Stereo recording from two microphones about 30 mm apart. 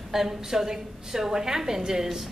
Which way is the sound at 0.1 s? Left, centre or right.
Centre.